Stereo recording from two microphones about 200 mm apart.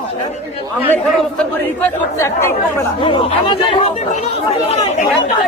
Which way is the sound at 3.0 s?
25° left (ahead or behind).